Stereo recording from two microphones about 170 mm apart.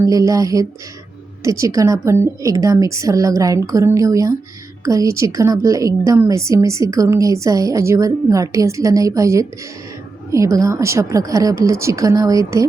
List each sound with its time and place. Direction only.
0.0 s a woman's voice: 20° right (ahead or behind)